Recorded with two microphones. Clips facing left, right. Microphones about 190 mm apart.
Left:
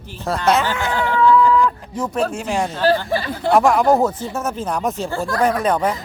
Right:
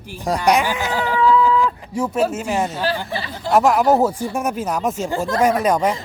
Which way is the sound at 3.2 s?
55° left (ahead or behind).